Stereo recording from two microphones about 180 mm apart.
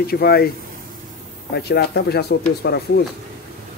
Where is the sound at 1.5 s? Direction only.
65° left (ahead or behind).